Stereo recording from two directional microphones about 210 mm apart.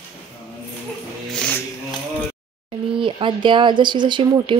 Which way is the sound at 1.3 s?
5° left (ahead or behind).